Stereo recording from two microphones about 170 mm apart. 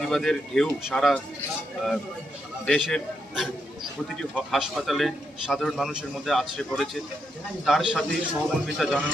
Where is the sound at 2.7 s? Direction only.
Centre (ahead or behind).